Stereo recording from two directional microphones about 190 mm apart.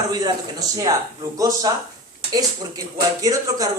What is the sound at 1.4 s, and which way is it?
Speech, 20° right (ahead or behind).